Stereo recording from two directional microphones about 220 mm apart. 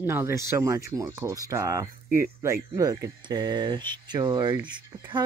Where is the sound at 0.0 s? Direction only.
10° right (ahead or behind).